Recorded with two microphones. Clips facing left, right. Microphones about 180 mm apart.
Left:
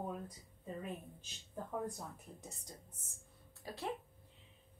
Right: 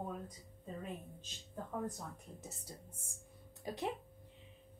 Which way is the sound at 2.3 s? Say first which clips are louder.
Right 2 dB; 5° right (ahead or behind).